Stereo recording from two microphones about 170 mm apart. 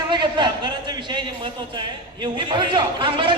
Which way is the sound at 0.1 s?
25° right (ahead or behind).